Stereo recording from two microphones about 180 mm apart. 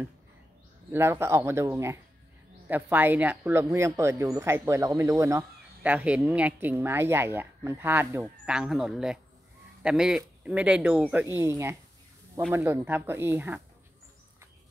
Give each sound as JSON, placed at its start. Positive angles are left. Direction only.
{"t": 0.9, "sound": "speech", "side_deg": -15}